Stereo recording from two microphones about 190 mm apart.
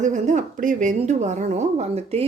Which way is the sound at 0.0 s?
40° right (ahead or behind).